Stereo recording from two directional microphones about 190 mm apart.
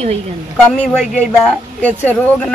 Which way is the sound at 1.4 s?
5° left (ahead or behind).